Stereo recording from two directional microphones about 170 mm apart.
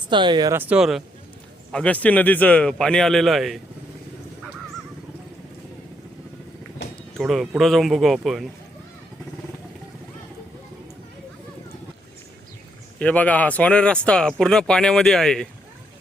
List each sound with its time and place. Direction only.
0.1 s speech: 25° right (ahead or behind)
0.5 s speech: 10° right (ahead or behind)
1.7 s speech: 5° left (ahead or behind)
7.2 s speech: centre (ahead or behind)
13.0 s speech: 10° left (ahead or behind)